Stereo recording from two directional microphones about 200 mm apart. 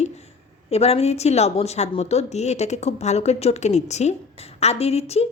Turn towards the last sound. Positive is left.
turn(degrees=30)  # may be behind; listen again after turning